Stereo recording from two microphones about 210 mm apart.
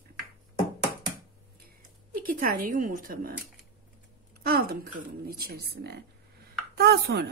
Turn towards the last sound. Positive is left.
turn(degrees=-50)  # may be behind; listen again after turning